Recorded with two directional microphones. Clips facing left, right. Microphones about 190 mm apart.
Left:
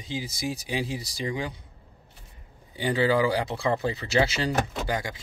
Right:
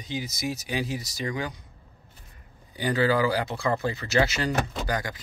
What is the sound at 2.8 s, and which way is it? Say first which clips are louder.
Speech: even; 20° left (ahead or behind).